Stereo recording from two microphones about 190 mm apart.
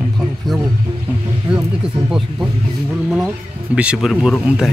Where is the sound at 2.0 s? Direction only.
5° right (ahead or behind).